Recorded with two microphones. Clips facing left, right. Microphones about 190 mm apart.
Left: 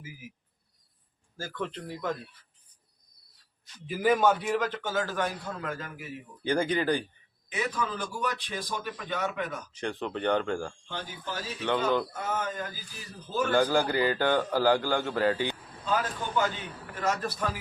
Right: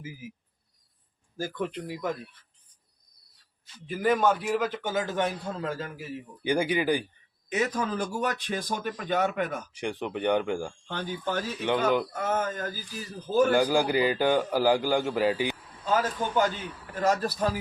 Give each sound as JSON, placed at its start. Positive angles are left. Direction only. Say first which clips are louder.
{"t": 1.4, "sound": "a man's voice", "louder": "right 4 dB", "side_deg": -15}
{"t": 3.8, "sound": "a man's voice", "louder": "even", "side_deg": 0}
{"t": 6.4, "sound": "a man's voice", "louder": "right 1 dB", "side_deg": -10}
{"t": 7.5, "sound": "speech", "louder": "right 4 dB", "side_deg": -40}
{"t": 9.7, "sound": "a man's voice", "louder": "left 2 dB", "side_deg": -10}
{"t": 10.8, "sound": "speech", "louder": "right 6 dB", "side_deg": -55}
{"t": 11.6, "sound": "a man's voice", "louder": "right 1 dB", "side_deg": -15}
{"t": 12.1, "sound": "a man's voice", "louder": "right 4 dB", "side_deg": -50}
{"t": 13.5, "sound": "a man's voice", "louder": "right 2 dB", "side_deg": -15}
{"t": 17.0, "sound": "a man's voice", "louder": "right 5 dB", "side_deg": -35}